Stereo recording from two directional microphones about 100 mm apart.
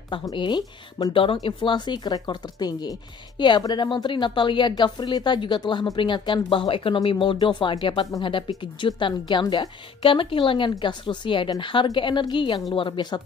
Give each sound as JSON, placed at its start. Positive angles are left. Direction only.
{"t": 0.2, "sound": "speech", "side_deg": 45}
{"t": 1.1, "sound": "a woman's voice", "side_deg": 60}
{"t": 1.4, "sound": "a woman's voice", "side_deg": 50}